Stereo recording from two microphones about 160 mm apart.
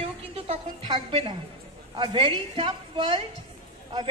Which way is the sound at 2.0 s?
25° right (ahead or behind).